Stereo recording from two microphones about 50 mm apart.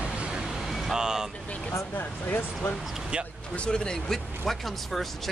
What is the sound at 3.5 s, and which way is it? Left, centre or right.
Speech, centre.